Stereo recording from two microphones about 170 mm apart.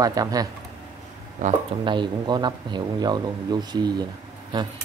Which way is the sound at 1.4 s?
50° right (ahead or behind).